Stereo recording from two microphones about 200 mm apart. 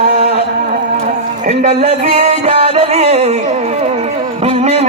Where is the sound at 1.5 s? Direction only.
35° right (ahead or behind).